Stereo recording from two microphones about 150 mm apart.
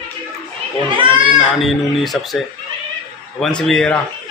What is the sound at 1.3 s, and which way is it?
Speech, centre (ahead or behind).